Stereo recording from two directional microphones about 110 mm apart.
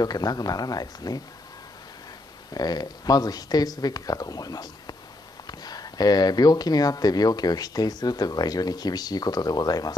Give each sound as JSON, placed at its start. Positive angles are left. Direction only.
{"t": 0.0, "sound": "speech", "side_deg": 35}
{"t": 2.5, "sound": "speech", "side_deg": 35}